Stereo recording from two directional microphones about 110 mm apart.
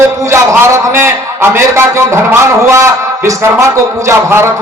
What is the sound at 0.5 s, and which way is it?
A man's voice, 25° right (ahead or behind).